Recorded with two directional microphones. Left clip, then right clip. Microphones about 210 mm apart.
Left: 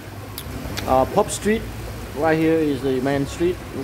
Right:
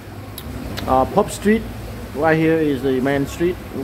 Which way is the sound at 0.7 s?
5° right (ahead or behind).